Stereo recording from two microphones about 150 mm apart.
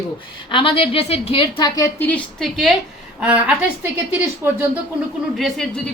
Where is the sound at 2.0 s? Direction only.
10° left (ahead or behind); by 4.8 s 15° right (ahead or behind).